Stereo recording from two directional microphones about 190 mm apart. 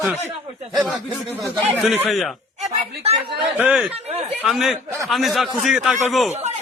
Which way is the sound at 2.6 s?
35° right (ahead or behind).